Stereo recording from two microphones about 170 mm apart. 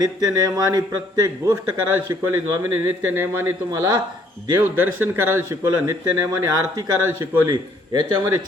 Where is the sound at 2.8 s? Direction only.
15° right (ahead or behind).